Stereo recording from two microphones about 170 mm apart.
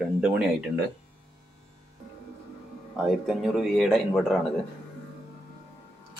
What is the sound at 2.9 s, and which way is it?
A man's voice, centre (ahead or behind).